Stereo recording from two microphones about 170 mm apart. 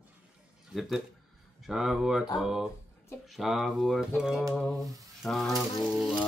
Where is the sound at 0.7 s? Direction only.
Centre (ahead or behind).